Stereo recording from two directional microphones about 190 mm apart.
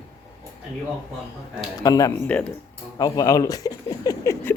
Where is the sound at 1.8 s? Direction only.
20° left (ahead or behind).